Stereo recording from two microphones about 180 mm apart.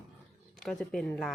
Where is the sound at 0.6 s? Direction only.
5° left (ahead or behind).